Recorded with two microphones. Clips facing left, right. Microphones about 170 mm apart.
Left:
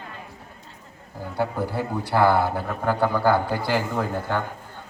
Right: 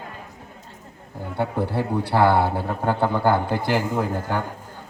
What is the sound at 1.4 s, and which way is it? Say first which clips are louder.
A man's voice: right 2 dB; 30° right (ahead or behind).